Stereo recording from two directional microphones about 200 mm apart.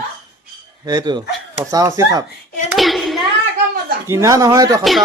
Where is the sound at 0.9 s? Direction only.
20° right (ahead or behind).